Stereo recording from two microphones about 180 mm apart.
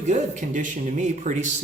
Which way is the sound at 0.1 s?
45° right (ahead or behind).